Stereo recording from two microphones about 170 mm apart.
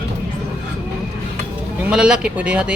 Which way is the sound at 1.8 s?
5° right (ahead or behind).